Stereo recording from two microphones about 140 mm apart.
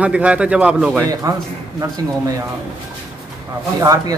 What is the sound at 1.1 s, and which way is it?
Speech, 25° right (ahead or behind).